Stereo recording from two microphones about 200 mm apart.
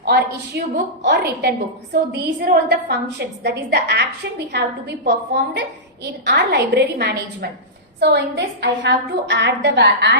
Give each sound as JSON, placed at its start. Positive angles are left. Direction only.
{"t": 0.0, "sound": "a woman's voice", "side_deg": -55}